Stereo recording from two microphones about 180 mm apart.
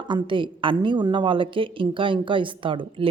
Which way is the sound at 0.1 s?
25° right (ahead or behind).